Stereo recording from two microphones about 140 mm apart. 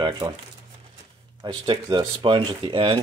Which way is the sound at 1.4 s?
35° right (ahead or behind).